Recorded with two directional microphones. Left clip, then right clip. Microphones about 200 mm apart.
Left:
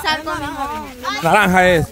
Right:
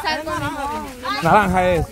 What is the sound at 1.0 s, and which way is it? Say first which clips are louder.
Speech: left 1 dB; 45° left (ahead or behind).